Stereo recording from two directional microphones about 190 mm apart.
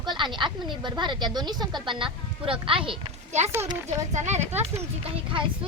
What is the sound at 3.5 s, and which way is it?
Speech, 15° right (ahead or behind).